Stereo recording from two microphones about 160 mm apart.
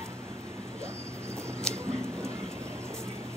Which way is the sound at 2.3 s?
5° left (ahead or behind).